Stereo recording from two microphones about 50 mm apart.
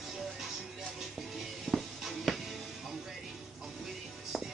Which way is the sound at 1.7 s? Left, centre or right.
Centre.